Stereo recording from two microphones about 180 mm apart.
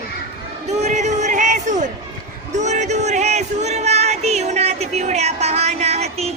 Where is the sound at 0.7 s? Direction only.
40° right (ahead or behind).